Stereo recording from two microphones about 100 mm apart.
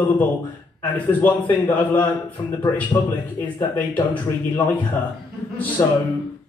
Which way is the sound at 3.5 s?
15° left (ahead or behind).